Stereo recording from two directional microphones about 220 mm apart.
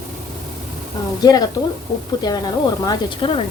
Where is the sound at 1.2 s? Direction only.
20° left (ahead or behind).